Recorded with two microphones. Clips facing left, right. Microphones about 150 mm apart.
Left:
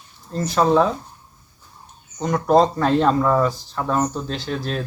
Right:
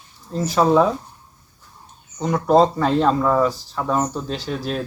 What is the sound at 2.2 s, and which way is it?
Speech, 5° right (ahead or behind).